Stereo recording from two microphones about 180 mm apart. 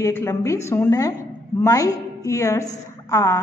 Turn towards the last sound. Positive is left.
turn(degrees=15)  # may be behind; listen again after turning